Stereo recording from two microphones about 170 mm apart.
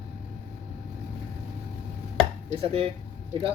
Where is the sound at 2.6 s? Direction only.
35° right (ahead or behind).